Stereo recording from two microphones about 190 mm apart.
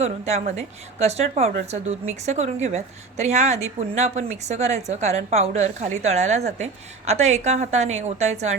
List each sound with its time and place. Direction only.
0.0 s a woman's voice: 35° right (ahead or behind)